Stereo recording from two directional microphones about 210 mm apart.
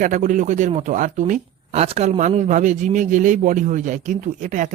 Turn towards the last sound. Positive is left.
turn(degrees=-35)  # may be behind; listen again after turning